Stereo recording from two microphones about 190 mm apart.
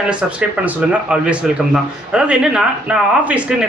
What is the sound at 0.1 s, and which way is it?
A man's voice, 5° right (ahead or behind).